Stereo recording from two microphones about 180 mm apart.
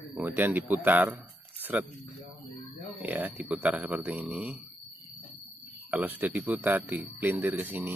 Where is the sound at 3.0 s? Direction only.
10° right (ahead or behind).